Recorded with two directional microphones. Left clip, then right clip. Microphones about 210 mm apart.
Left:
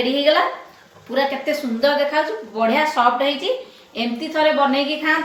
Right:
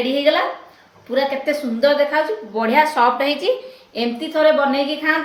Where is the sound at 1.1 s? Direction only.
20° right (ahead or behind).